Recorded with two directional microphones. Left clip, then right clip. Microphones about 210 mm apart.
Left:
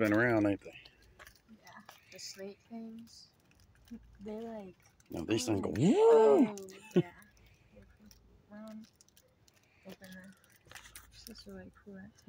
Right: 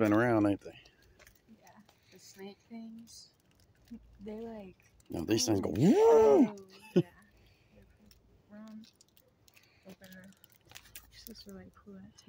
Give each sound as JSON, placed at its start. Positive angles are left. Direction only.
{"t": 0.0, "sound": "speech", "side_deg": -20}
{"t": 0.8, "sound": "chewing", "side_deg": 0}
{"t": 2.1, "sound": "speech", "side_deg": -20}
{"t": 4.2, "sound": "speech", "side_deg": 0}
{"t": 5.1, "sound": "speech", "side_deg": -25}
{"t": 8.1, "sound": "a sound", "side_deg": 0}
{"t": 9.9, "sound": "a sound", "side_deg": -10}